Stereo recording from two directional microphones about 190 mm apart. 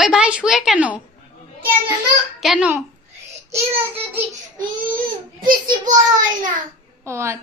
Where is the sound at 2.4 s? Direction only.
5° right (ahead or behind).